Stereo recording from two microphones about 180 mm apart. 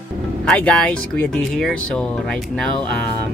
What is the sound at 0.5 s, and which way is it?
Speech, 5° left (ahead or behind).